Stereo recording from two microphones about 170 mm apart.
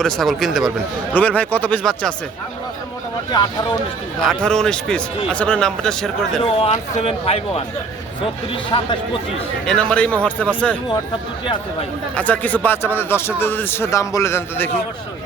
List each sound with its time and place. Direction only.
0.0 s a man's voice: centre (ahead or behind)
3.3 s speech: 25° left (ahead or behind)
4.2 s a man's voice: 5° left (ahead or behind)
6.4 s speech: 35° left (ahead or behind)
8.7 s speech: 30° left (ahead or behind)
9.6 s a man's voice: 5° left (ahead or behind)
12.1 s a man's voice: 10° left (ahead or behind)